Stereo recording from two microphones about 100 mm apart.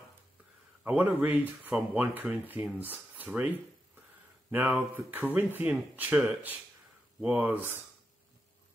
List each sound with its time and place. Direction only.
0.8 s speech: 15° right (ahead or behind)